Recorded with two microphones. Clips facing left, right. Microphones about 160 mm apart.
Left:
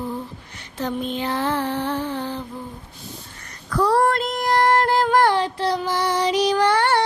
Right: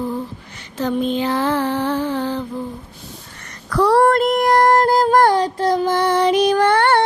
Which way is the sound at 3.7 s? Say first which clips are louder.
Right 5 dB; 70° right (ahead or behind).